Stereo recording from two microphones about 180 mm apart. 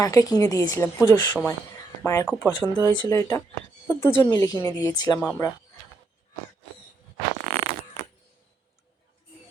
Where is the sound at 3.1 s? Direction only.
15° left (ahead or behind).